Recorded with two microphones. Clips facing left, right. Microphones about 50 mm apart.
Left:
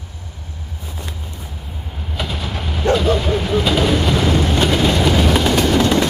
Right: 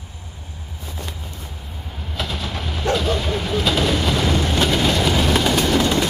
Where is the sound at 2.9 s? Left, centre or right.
Centre.